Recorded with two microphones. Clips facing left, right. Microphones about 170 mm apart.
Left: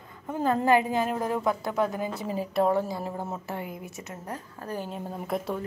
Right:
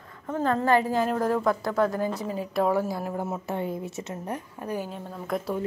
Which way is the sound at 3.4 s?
25° right (ahead or behind).